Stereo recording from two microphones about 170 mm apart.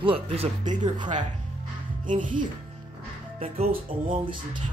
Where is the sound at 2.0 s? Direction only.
50° right (ahead or behind).